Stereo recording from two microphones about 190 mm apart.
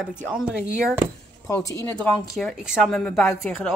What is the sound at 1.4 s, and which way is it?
Speech, 15° left (ahead or behind).